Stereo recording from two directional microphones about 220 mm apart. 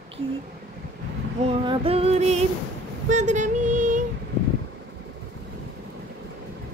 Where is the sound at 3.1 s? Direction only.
35° right (ahead or behind).